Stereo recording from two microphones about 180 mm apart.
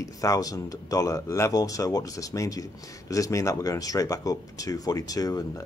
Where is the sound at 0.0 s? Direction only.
20° left (ahead or behind).